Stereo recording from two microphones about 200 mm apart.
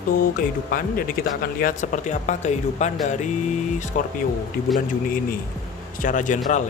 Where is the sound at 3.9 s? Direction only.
40° left (ahead or behind).